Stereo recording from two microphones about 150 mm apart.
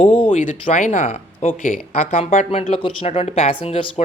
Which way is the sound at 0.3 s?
55° left (ahead or behind).